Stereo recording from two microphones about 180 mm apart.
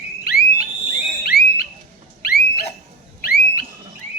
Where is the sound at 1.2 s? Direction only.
55° left (ahead or behind).